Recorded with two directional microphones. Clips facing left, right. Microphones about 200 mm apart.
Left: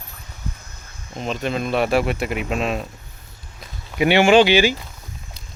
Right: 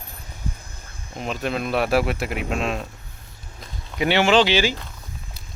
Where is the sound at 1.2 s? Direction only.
5° right (ahead or behind).